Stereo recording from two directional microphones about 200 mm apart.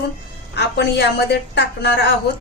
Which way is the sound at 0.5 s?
55° left (ahead or behind).